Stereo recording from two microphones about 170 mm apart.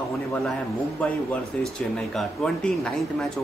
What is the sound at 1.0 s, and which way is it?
Speech, 5° left (ahead or behind).